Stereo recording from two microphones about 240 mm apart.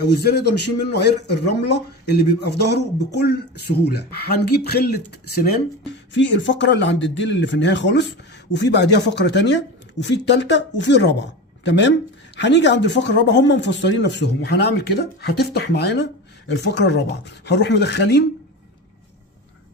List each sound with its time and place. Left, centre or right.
0.0 s a man's voice: left